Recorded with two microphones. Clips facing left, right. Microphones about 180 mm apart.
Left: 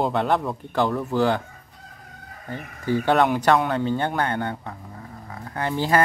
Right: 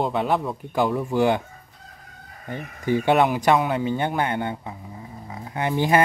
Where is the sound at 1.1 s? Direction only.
15° right (ahead or behind).